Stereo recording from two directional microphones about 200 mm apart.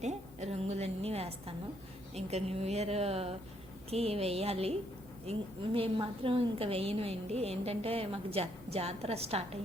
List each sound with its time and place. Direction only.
0.0 s a woman's voice: 35° right (ahead or behind)